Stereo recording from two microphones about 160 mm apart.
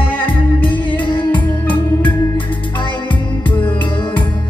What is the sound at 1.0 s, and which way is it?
Music, 30° left (ahead or behind).